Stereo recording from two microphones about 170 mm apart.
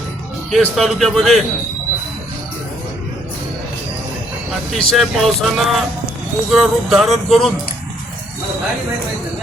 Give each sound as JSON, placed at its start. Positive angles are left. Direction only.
{"t": 0.5, "sound": "speech", "side_deg": 0}
{"t": 4.7, "sound": "speech", "side_deg": 0}